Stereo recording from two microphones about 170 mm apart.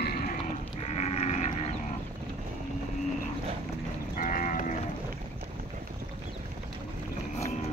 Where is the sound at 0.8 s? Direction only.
40° left (ahead or behind).